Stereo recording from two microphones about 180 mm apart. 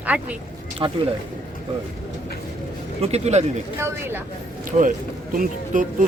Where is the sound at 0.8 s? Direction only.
25° right (ahead or behind).